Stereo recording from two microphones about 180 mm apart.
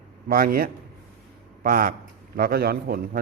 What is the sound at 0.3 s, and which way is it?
A man's voice, 55° right (ahead or behind).